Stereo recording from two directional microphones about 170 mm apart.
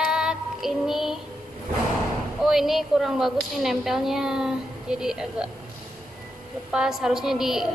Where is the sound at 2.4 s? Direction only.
Centre (ahead or behind).